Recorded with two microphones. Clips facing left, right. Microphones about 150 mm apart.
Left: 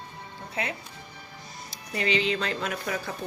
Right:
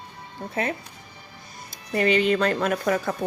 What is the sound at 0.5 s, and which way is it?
Speech, 45° right (ahead or behind).